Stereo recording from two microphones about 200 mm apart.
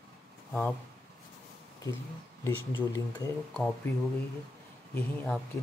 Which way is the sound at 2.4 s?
15° left (ahead or behind).